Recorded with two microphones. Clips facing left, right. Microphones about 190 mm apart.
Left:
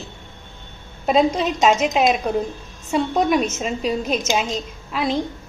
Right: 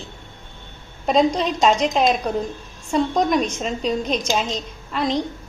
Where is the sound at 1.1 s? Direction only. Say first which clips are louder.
Even; 5° left (ahead or behind).